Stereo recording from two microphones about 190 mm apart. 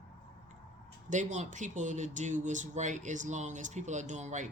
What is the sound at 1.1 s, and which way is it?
Speech, 40° right (ahead or behind).